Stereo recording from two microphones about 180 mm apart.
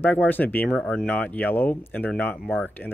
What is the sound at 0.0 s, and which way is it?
Speech, 10° left (ahead or behind).